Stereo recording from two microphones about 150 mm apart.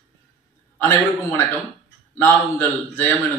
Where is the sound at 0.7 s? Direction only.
15° left (ahead or behind).